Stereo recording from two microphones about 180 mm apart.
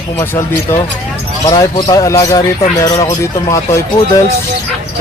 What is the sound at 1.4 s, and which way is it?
Speech, 20° left (ahead or behind).